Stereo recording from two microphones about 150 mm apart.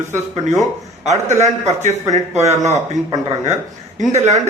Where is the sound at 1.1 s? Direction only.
50° right (ahead or behind).